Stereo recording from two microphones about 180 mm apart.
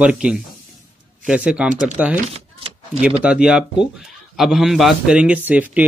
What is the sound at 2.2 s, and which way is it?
Power windows, 35° right (ahead or behind).